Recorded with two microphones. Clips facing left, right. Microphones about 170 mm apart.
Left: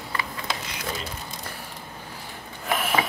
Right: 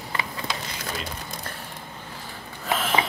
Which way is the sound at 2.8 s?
10° left (ahead or behind).